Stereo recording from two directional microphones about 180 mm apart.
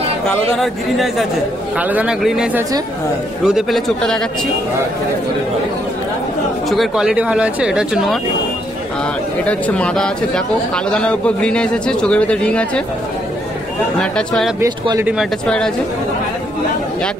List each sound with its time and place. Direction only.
0.3 s speech: centre (ahead or behind)
6.7 s speech: centre (ahead or behind)
9.4 s speech: 5° left (ahead or behind)
14.1 s speech: centre (ahead or behind)
14.6 s speech: 15° right (ahead or behind)
15.1 s speech: 5° left (ahead or behind)